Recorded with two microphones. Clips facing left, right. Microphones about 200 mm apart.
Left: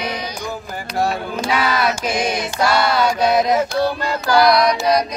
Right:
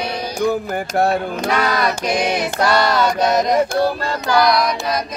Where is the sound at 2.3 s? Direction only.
60° right (ahead or behind).